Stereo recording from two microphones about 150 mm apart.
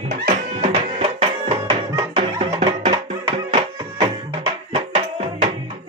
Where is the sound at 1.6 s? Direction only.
25° right (ahead or behind).